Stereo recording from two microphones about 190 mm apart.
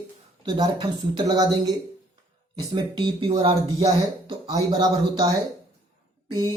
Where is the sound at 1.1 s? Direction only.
20° right (ahead or behind).